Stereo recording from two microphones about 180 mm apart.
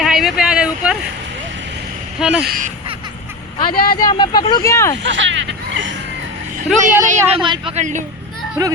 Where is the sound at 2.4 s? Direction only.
50° right (ahead or behind).